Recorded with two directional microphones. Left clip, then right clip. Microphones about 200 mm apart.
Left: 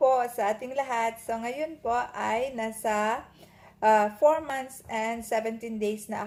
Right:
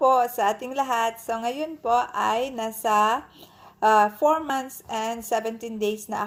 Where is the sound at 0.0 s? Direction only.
25° right (ahead or behind).